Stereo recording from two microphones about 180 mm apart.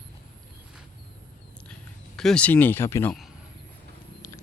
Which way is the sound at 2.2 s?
5° left (ahead or behind).